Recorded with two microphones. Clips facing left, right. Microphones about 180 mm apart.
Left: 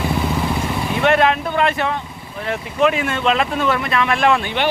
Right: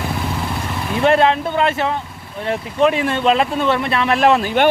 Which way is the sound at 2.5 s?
35° right (ahead or behind).